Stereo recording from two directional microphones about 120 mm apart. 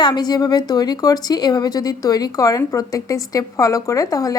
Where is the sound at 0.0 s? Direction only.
35° left (ahead or behind).